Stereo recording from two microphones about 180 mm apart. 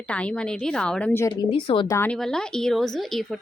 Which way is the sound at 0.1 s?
5° left (ahead or behind).